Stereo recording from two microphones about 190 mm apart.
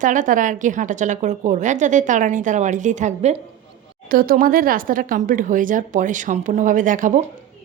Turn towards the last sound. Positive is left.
turn(degrees=-45)  # may be behind; listen again after turning